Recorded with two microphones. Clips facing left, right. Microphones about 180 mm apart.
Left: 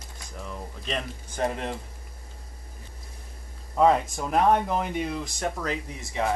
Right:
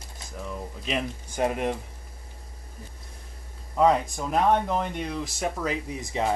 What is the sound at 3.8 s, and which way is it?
Speech, centre (ahead or behind).